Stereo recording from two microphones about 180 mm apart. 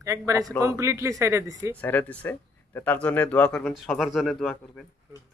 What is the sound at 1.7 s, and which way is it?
Speech, 10° left (ahead or behind).